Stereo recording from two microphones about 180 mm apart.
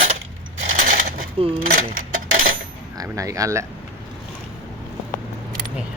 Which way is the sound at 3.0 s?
20° right (ahead or behind).